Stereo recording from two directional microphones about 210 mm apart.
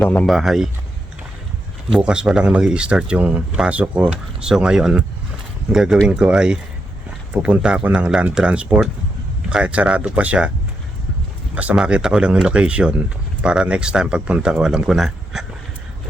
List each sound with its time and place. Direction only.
0.0 s speech: 5° left (ahead or behind)
1.9 s speech: 5° right (ahead or behind)
11.5 s speech: 5° right (ahead or behind)